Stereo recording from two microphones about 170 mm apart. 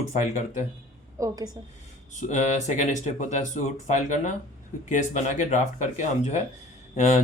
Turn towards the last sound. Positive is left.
turn(degrees=40)  # may be behind; listen again after turning